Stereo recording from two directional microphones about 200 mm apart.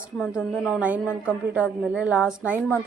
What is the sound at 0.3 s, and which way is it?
A woman's voice, 5° right (ahead or behind).